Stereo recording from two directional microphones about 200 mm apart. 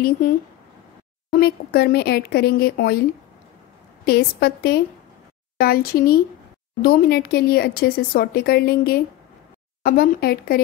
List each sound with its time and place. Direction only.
1.3 s a woman's voice: 50° left (ahead or behind)